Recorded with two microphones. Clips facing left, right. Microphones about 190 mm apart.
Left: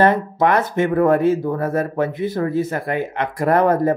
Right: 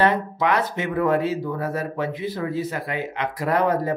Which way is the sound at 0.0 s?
45° left (ahead or behind).